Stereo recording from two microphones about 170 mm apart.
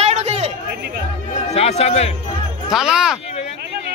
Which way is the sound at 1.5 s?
40° left (ahead or behind).